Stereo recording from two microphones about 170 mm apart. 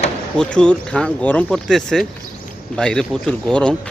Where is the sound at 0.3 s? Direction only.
5° left (ahead or behind).